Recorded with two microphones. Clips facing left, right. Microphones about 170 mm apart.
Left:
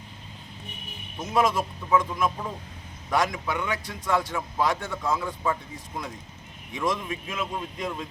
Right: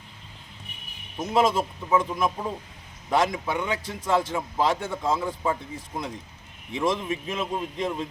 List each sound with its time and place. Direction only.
1.2 s a man's voice: 25° right (ahead or behind)
6.7 s a man's voice: 25° right (ahead or behind)